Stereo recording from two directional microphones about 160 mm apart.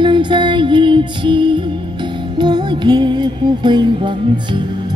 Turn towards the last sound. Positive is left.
turn(degrees=-30)  # may be behind; listen again after turning